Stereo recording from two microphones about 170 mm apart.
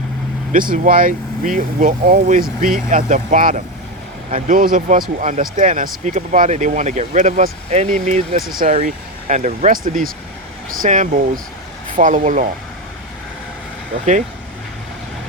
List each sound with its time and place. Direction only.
0.7 s speech: 55° right (ahead or behind)
14.0 s speech: 45° right (ahead or behind)